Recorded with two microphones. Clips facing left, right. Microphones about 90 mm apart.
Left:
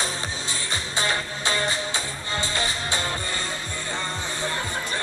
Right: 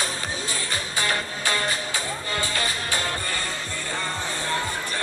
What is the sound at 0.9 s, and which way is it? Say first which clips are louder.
Music: left 1 dB; 25° left (ahead or behind).